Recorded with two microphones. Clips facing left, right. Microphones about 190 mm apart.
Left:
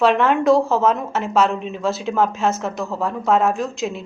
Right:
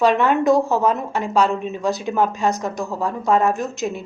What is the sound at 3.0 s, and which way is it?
Speech, centre (ahead or behind).